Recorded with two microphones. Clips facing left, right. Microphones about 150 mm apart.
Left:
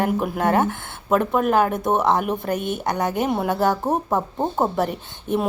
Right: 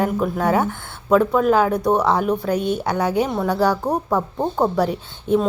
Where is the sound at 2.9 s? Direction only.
Centre (ahead or behind).